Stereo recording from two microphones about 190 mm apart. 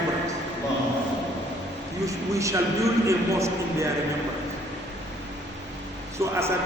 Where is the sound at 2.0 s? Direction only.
15° right (ahead or behind).